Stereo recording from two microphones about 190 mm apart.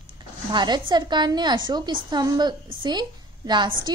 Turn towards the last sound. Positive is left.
turn(degrees=-25)  # may be behind; listen again after turning